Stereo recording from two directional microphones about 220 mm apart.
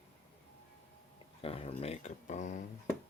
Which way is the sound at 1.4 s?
25° left (ahead or behind).